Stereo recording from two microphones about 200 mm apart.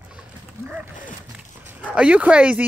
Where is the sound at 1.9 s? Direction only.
5° right (ahead or behind).